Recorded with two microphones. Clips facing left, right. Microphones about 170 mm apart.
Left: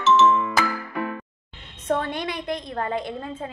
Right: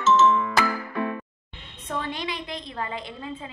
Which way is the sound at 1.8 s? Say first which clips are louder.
Left 6 dB; 50° left (ahead or behind).